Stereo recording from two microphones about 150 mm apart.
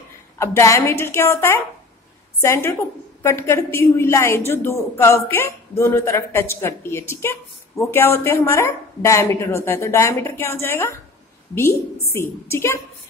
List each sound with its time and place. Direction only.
0.4 s a woman's voice: 20° left (ahead or behind)
12.1 s speech: 15° left (ahead or behind)